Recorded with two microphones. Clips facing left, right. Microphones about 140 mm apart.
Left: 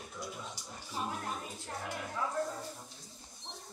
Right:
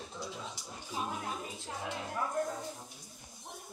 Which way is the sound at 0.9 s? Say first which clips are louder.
Right 1 dB; 15° right (ahead or behind).